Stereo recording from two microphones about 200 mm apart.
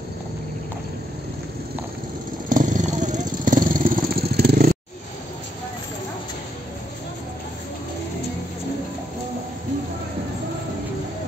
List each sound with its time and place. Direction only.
2.5 s vehicle: 40° right (ahead or behind)